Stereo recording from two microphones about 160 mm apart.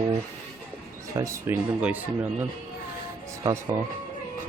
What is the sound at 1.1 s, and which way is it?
Speech, 20° right (ahead or behind).